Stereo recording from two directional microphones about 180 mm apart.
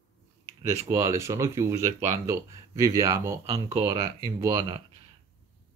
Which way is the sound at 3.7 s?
20° right (ahead or behind).